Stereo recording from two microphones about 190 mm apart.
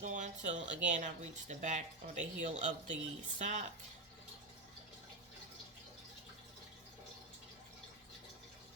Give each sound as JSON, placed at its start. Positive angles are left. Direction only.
{"t": 0.0, "sound": "speech", "side_deg": -40}